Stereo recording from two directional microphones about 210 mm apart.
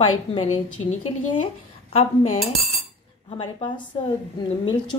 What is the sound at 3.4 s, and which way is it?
Speech, 25° left (ahead or behind).